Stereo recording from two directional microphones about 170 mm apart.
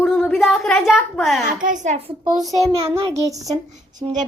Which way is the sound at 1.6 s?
45° right (ahead or behind).